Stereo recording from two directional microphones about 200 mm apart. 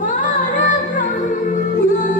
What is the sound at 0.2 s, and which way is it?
Music, 40° left (ahead or behind).